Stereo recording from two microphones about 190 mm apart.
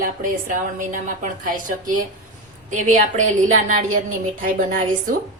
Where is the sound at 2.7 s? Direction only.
40° right (ahead or behind).